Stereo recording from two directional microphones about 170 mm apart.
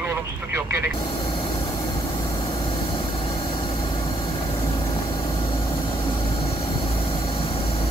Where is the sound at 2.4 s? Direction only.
30° left (ahead or behind).